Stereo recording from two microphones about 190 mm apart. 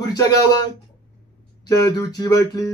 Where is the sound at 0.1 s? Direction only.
20° left (ahead or behind).